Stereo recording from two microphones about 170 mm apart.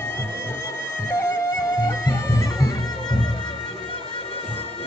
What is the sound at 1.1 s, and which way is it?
Music, 15° left (ahead or behind).